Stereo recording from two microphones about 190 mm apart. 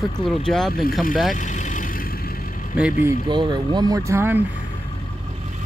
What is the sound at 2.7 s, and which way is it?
Speech, 5° right (ahead or behind).